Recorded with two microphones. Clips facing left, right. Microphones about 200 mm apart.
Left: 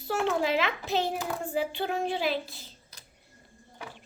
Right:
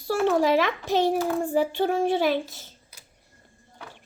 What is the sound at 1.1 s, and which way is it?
A child's voice, 45° right (ahead or behind).